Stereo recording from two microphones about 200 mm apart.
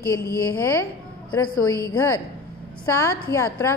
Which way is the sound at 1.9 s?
15° left (ahead or behind).